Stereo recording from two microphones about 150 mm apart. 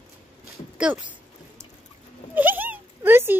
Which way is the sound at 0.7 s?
10° right (ahead or behind).